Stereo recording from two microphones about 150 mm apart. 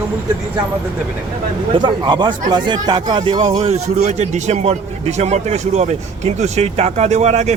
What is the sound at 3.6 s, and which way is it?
A man's voice, 45° right (ahead or behind).